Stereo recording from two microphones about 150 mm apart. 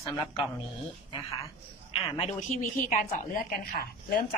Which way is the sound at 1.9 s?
45° left (ahead or behind).